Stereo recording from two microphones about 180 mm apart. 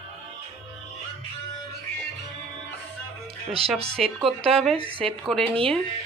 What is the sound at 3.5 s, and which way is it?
Speech, 35° right (ahead or behind).